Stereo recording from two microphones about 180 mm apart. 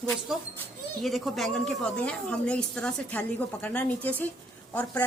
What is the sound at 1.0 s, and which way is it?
A woman's voice, centre (ahead or behind).